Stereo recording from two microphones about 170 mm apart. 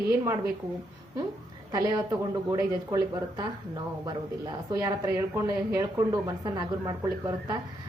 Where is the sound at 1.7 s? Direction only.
25° right (ahead or behind).